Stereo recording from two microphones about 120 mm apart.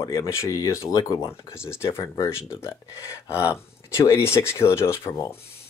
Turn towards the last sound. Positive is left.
turn(degrees=25)  # may be behind; listen again after turning